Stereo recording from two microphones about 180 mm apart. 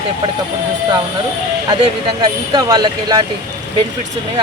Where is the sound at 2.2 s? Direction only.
20° right (ahead or behind).